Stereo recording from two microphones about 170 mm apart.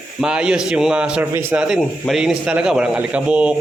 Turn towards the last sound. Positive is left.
turn(degrees=-5)  # may be behind; listen again after turning